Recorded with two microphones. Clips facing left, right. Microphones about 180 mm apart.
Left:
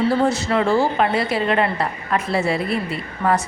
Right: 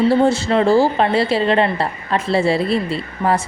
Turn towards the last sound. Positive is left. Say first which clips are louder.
# right 2 dB
turn(degrees=-30)  # may be behind; listen again after turning